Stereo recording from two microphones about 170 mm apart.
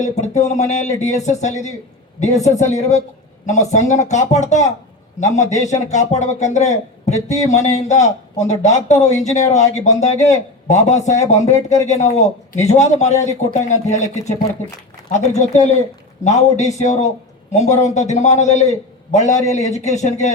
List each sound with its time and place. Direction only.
0.0 s a man's voice: 45° left (ahead or behind)
15.4 s a man's voice: 45° left (ahead or behind)